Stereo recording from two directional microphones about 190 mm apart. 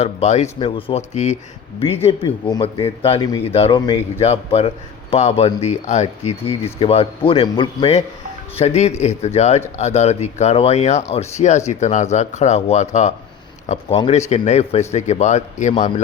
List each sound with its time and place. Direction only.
0.0 s speech: 35° left (ahead or behind)
2.0 s a man's voice: 25° left (ahead or behind)